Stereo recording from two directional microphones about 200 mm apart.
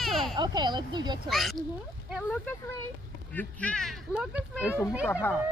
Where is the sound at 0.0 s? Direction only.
Centre (ahead or behind).